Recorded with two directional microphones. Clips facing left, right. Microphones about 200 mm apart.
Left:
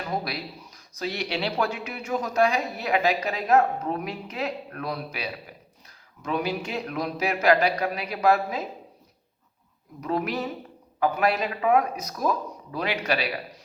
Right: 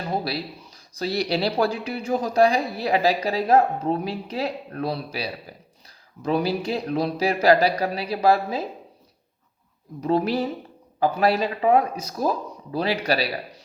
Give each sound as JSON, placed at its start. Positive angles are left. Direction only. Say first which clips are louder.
{"t": 0.0, "sound": "speech", "louder": "right 3 dB", "side_deg": -30}
{"t": 10.0, "sound": "speech", "louder": "right 5 dB", "side_deg": -30}